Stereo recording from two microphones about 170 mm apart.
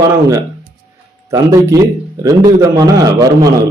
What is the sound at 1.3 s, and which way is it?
A man's voice, 20° right (ahead or behind).